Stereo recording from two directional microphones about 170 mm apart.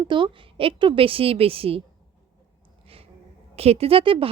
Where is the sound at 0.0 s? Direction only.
30° right (ahead or behind).